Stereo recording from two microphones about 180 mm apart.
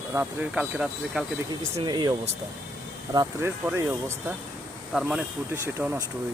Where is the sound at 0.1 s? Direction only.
10° right (ahead or behind).